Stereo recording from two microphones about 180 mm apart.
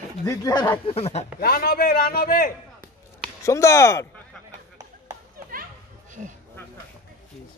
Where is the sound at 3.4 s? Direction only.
15° left (ahead or behind).